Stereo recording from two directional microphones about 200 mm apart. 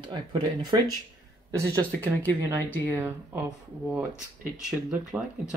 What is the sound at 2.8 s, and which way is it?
Speech, 10° right (ahead or behind).